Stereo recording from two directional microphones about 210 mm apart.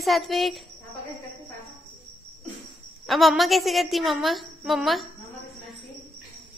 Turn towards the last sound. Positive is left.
turn(degrees=0)  # may be behind; listen again after turning